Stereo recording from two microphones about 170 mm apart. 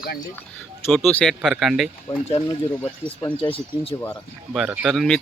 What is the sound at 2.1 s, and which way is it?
Speech, 25° left (ahead or behind).